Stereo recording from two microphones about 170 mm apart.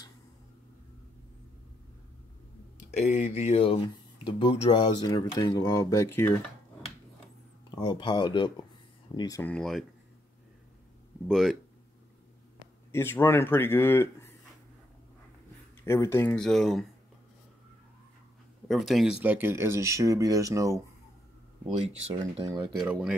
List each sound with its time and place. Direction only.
2.8 s speech: 45° left (ahead or behind); by 6.3 s 15° left (ahead or behind)
7.7 s speech: 25° left (ahead or behind)
9.4 s speech: 5° left (ahead or behind)
11.2 s speech: centre (ahead or behind)
12.9 s speech: 15° left (ahead or behind)
15.8 s speech: 15° left (ahead or behind)
18.7 s speech: centre (ahead or behind); by 20.8 s 20° right (ahead or behind)
22.4 s speech: 20° right (ahead or behind)
22.8 s speech: 5° right (ahead or behind)